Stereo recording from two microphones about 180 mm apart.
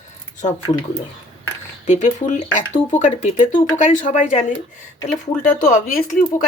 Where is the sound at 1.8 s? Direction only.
45° left (ahead or behind).